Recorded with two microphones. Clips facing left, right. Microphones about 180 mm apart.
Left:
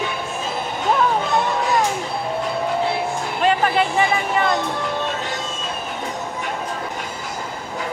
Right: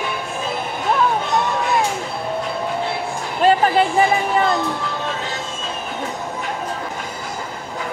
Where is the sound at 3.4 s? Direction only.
35° right (ahead or behind).